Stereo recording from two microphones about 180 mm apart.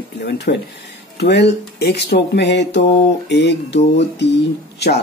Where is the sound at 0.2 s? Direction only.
70° left (ahead or behind).